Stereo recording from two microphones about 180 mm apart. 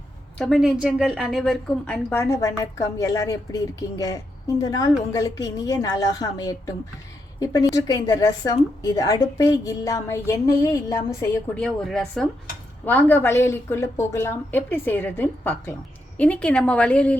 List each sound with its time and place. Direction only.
0.3 s a woman's voice: centre (ahead or behind); by 11.3 s 20° left (ahead or behind)
11.5 s a woman's voice: 5° left (ahead or behind)